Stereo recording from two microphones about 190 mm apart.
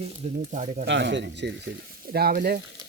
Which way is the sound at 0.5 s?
40° right (ahead or behind).